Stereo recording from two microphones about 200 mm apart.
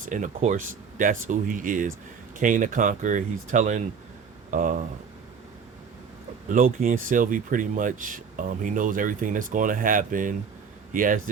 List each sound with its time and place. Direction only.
0.0 s speech: 40° right (ahead or behind)
6.5 s speech: 45° right (ahead or behind)